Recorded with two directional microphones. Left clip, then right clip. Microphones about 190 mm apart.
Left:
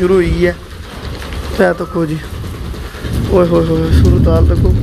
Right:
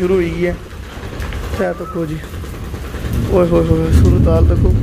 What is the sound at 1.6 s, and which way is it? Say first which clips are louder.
Speech: left 7 dB; 15° left (ahead or behind).